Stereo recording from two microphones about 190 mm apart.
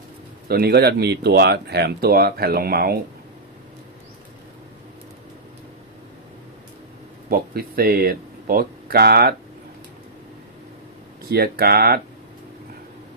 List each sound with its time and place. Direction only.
0.4 s speech: 55° right (ahead or behind)
7.3 s speech: 50° right (ahead or behind)
11.3 s speech: 55° right (ahead or behind)